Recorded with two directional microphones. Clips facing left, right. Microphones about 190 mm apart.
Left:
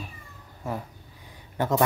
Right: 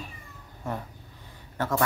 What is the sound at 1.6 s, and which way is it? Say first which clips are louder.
Speech: left 3 dB; 20° left (ahead or behind).